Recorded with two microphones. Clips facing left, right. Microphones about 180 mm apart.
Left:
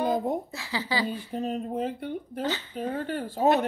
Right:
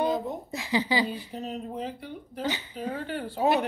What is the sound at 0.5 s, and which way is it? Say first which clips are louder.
Speech: right 4 dB; 20° right (ahead or behind).